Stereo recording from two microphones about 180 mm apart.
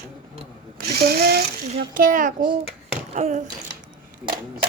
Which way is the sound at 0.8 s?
60° right (ahead or behind).